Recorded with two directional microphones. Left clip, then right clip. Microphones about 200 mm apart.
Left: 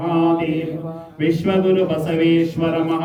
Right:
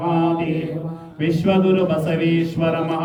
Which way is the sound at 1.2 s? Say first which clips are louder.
Left 1 dB; 20° right (ahead or behind).